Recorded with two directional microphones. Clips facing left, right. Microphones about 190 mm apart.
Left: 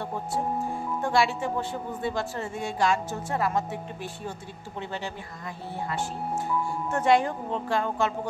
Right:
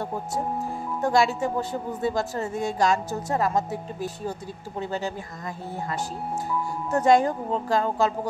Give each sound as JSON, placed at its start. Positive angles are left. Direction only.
{"t": 1.0, "sound": "a woman's voice", "side_deg": -40}
{"t": 6.9, "sound": "a woman's voice", "side_deg": -40}